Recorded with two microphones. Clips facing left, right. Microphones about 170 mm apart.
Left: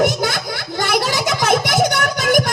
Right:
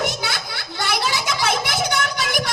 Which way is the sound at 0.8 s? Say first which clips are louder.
Left 5 dB; 45° left (ahead or behind).